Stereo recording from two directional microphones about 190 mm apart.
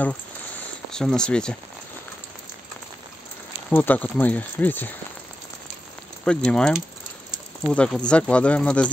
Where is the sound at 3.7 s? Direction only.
10° left (ahead or behind).